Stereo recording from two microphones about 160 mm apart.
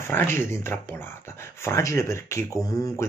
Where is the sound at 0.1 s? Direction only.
15° left (ahead or behind).